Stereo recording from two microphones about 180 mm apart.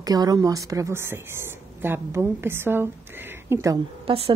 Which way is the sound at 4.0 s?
30° right (ahead or behind).